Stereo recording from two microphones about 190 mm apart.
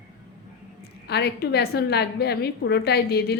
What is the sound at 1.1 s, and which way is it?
A woman's voice, 60° left (ahead or behind).